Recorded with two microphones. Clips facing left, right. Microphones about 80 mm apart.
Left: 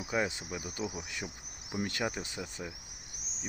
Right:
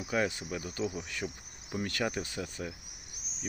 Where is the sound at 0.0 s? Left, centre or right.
Centre.